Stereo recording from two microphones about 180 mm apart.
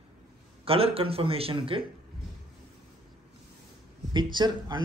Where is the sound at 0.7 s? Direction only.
30° right (ahead or behind).